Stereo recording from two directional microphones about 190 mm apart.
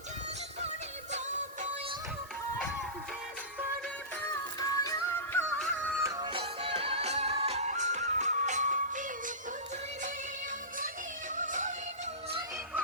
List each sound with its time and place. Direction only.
1.1 s music: 40° right (ahead or behind)
4.6 s music: 20° left (ahead or behind)
6.0 s music: 20° right (ahead or behind); by 9.3 s 45° right (ahead or behind)
11.3 s music: 40° right (ahead or behind)